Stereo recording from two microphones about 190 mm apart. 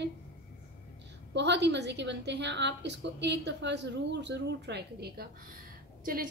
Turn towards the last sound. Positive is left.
turn(degrees=-50)  # may be behind; listen again after turning